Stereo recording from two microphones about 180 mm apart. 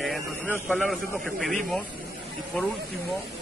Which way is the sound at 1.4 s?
Centre (ahead or behind).